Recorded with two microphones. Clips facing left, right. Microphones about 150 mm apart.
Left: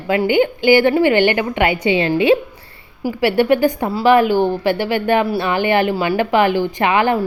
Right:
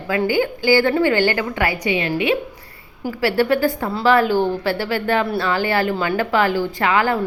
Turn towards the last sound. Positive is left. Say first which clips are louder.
# left 3 dB
turn(degrees=20)  # may be behind; listen again after turning